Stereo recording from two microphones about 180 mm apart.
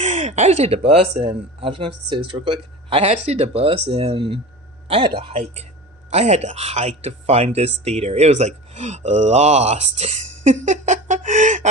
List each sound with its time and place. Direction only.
0.0 s speech: 40° right (ahead or behind)